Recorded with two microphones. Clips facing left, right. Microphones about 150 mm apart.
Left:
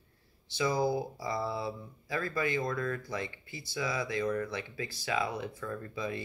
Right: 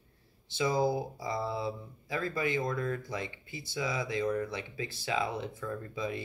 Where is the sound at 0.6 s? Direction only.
20° right (ahead or behind).